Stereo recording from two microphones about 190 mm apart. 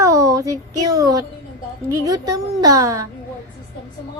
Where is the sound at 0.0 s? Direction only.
15° right (ahead or behind).